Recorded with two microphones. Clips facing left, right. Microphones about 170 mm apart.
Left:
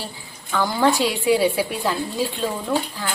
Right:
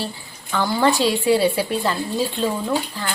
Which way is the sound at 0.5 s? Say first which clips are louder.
Even; 5° left (ahead or behind).